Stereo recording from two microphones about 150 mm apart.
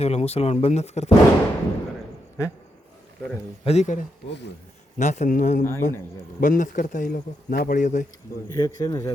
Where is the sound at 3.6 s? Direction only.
50° left (ahead or behind).